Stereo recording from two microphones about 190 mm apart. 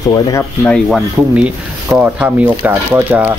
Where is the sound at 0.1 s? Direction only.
20° left (ahead or behind).